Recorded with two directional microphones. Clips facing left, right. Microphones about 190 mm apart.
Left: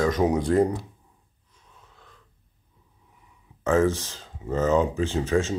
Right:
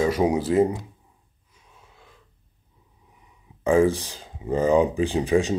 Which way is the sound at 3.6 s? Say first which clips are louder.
Right 3 dB; 15° right (ahead or behind).